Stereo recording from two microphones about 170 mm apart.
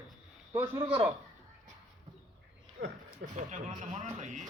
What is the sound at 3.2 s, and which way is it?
Speech, 45° right (ahead or behind).